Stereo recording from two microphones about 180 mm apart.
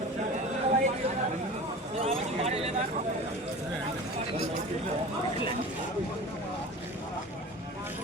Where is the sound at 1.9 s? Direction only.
35° right (ahead or behind).